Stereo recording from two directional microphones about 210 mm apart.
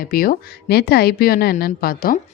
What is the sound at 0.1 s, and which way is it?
Speech, 45° left (ahead or behind).